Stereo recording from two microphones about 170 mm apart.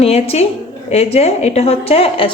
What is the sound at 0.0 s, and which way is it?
A woman's voice, 35° left (ahead or behind).